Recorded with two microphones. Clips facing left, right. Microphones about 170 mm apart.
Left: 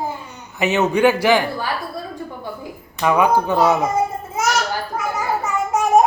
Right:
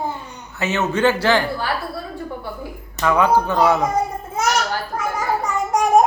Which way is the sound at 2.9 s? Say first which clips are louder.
Even; 15° left (ahead or behind).